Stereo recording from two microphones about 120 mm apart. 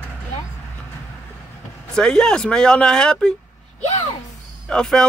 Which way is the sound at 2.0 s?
5° left (ahead or behind).